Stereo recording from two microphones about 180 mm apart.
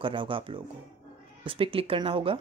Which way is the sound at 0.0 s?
30° right (ahead or behind).